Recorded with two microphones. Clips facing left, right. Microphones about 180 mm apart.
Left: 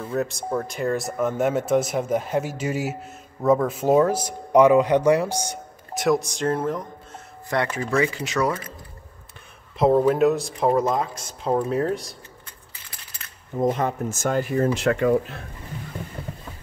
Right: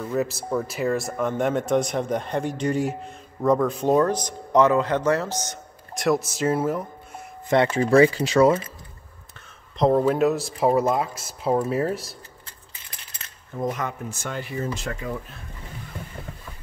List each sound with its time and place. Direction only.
0.0 s speech: centre (ahead or behind)
5.9 s speech: centre (ahead or behind)
7.4 s speech: 25° right (ahead or behind)
9.8 s speech: 5° left (ahead or behind)
13.6 s speech: 30° left (ahead or behind)
14.0 s speech: 45° left (ahead or behind); by 15.1 s 70° left (ahead or behind)